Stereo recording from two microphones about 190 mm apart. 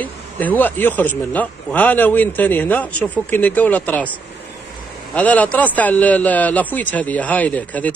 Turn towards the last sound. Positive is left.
turn(degrees=10)  # may be behind; listen again after turning